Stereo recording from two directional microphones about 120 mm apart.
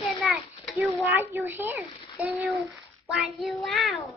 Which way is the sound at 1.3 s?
20° right (ahead or behind).